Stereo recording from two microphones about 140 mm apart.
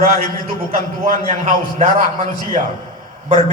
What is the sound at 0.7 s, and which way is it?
Speech, 90° right.